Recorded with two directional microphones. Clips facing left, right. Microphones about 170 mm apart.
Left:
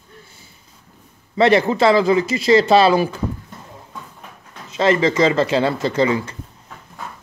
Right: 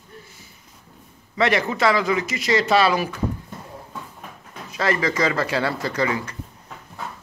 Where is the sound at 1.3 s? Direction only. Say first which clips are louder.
Left 6 dB; 30° left (ahead or behind).